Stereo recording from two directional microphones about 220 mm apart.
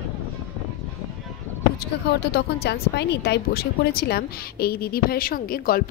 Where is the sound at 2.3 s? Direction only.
50° left (ahead or behind).